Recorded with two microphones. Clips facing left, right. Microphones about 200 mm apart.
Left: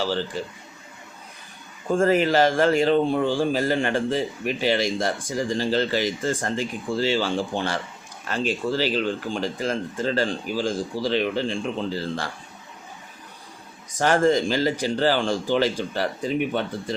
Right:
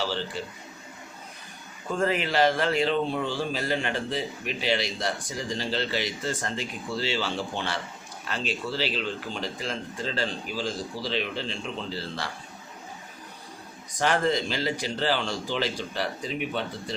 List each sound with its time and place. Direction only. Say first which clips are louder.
1.9 s speech: left 7 dB; 45° left (ahead or behind)
14.0 s speech: left 6 dB; 45° left (ahead or behind)